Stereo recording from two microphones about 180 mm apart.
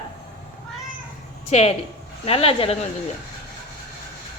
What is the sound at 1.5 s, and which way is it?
A woman's voice, 35° left (ahead or behind).